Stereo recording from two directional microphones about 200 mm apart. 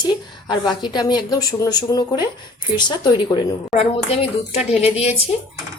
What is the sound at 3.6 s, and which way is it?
Speech, 30° left (ahead or behind).